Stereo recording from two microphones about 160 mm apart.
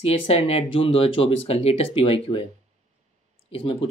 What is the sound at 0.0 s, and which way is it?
Speech, 40° left (ahead or behind).